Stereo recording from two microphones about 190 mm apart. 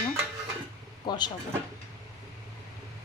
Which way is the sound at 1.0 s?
20° left (ahead or behind).